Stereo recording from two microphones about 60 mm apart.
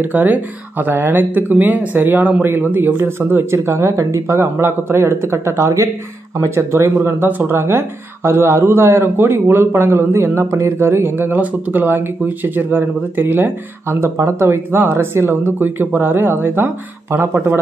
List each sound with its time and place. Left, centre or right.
0.0 s speech: right
3.5 s speech: right
7.2 s speech: right
7.5 s speech: right
11.4 s speech: right